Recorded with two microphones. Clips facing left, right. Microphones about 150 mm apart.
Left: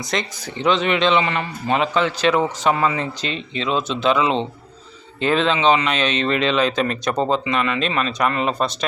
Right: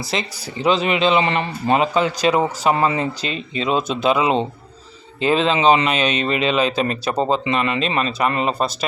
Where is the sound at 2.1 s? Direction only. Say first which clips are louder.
Right 1 dB; 10° right (ahead or behind).